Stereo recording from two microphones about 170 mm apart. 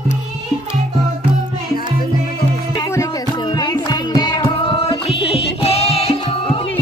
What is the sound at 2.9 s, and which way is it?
Music, 20° left (ahead or behind).